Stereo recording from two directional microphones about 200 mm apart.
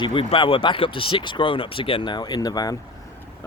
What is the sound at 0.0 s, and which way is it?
Speech, 25° left (ahead or behind).